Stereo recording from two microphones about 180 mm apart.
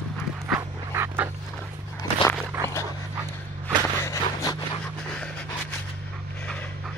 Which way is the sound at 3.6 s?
15° left (ahead or behind).